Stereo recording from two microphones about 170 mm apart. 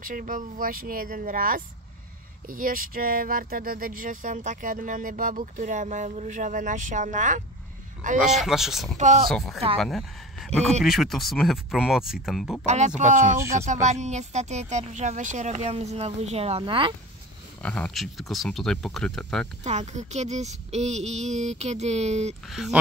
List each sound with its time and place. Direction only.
0.0 s speech: 55° right (ahead or behind)
8.2 s speech: centre (ahead or behind)
8.9 s speech: 45° right (ahead or behind)
9.3 s speech: centre (ahead or behind)
12.6 s speech: 45° right (ahead or behind)
13.4 s speech: 15° right (ahead or behind)
13.8 s speech: 45° right (ahead or behind)
17.6 s speech: 10° left (ahead or behind)
19.6 s speech: 40° right (ahead or behind)
22.5 s speech: centre (ahead or behind)